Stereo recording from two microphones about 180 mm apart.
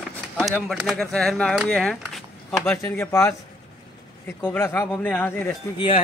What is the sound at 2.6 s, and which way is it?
Speech, 15° left (ahead or behind).